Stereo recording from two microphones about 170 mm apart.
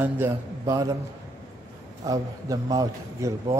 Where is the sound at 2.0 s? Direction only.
20° right (ahead or behind).